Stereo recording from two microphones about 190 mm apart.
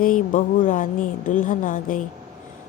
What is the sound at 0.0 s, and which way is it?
Speech, 45° left (ahead or behind).